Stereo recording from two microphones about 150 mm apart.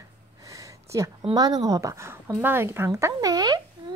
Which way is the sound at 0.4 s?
20° right (ahead or behind).